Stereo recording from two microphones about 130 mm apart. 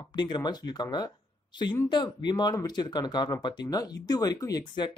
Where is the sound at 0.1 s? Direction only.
35° left (ahead or behind).